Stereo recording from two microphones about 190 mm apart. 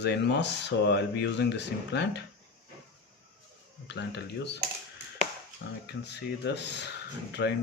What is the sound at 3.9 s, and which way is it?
Speech, 65° left (ahead or behind).